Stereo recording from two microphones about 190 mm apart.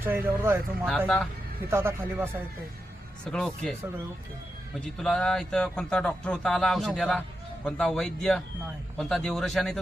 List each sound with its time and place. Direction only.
0.0 s speech: 10° right (ahead or behind)
0.9 s a man's voice: 5° left (ahead or behind)
1.7 s speech: 15° right (ahead or behind)
3.3 s a man's voice: 5° left (ahead or behind)
4.8 s a man's voice: 5° left (ahead or behind)